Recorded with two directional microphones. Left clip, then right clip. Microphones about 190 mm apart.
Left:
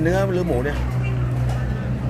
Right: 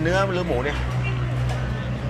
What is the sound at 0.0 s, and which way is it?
Speech, 20° left (ahead or behind).